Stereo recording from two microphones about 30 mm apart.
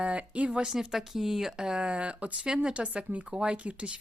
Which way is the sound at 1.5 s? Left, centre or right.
Right.